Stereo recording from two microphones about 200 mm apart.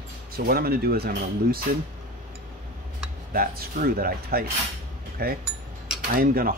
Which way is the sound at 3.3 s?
50° right (ahead or behind).